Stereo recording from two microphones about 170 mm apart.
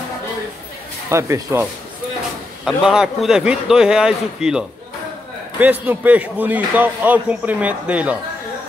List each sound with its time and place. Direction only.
1.1 s speech: 15° right (ahead or behind)
2.6 s speech: 5° right (ahead or behind)